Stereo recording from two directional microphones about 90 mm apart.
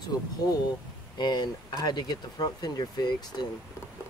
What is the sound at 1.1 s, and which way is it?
Speech, 50° left (ahead or behind).